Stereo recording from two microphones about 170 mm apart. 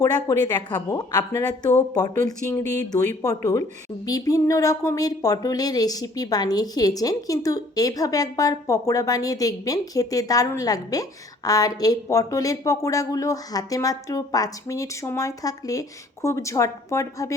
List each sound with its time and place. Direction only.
0.0 s a woman's voice: 20° left (ahead or behind)